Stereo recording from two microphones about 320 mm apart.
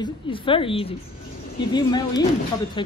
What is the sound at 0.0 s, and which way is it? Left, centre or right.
Speech, centre.